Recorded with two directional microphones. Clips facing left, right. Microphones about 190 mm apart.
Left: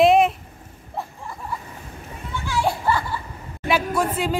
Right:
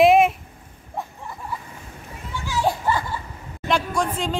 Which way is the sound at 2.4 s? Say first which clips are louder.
Even; 15° right (ahead or behind).